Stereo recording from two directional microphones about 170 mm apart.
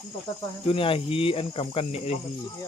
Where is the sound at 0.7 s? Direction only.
35° left (ahead or behind).